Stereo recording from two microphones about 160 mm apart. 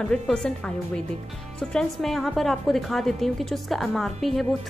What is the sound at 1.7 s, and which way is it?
A woman's voice, centre (ahead or behind).